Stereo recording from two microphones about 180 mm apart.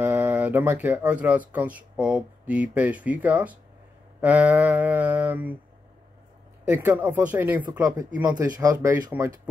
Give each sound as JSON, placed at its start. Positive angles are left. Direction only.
{"t": 0.0, "sound": "speech", "side_deg": -10}
{"t": 6.6, "sound": "speech", "side_deg": -10}